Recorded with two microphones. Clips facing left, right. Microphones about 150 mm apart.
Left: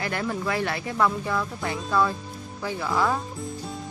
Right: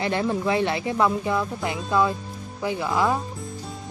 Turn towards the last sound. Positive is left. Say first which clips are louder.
# right 2 dB
turn(degrees=-15)  # may be behind; listen again after turning